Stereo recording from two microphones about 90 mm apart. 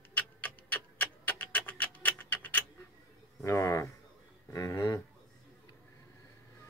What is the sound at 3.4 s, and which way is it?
Speech, 30° left (ahead or behind).